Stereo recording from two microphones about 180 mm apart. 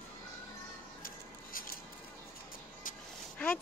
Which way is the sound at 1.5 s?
55° left (ahead or behind).